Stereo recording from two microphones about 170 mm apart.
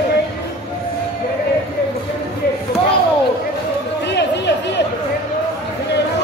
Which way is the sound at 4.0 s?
90° left.